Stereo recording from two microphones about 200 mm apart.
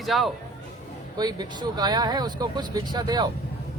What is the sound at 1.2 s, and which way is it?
Speech, 20° right (ahead or behind).